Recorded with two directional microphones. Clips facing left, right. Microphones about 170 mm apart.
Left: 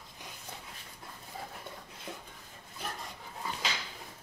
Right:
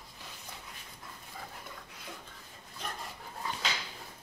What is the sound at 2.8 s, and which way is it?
Dog, 5° left (ahead or behind).